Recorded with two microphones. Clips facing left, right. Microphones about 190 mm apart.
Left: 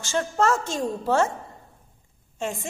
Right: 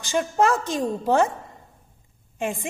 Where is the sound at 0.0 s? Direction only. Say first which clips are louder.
Right 2 dB; 15° right (ahead or behind).